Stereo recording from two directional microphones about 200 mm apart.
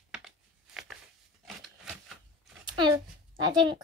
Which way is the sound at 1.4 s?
Centre (ahead or behind).